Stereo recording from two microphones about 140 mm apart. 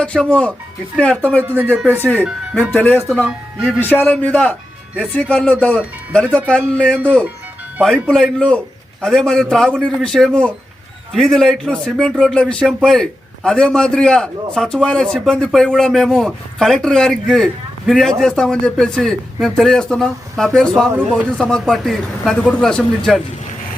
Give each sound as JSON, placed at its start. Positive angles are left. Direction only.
{"t": 0.0, "sound": "speech", "side_deg": 5}
{"t": 1.4, "sound": "speech", "side_deg": -10}
{"t": 1.9, "sound": "speech", "side_deg": 10}
{"t": 3.2, "sound": "speech", "side_deg": -5}
{"t": 3.9, "sound": "speech", "side_deg": 10}
{"t": 7.8, "sound": "speech", "side_deg": -5}